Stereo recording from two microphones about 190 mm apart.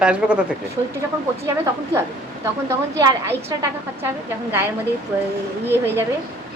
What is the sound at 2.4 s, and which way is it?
Speech, 15° right (ahead or behind).